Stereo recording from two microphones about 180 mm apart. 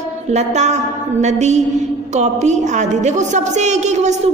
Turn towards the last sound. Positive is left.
turn(degrees=-40)  # may be behind; listen again after turning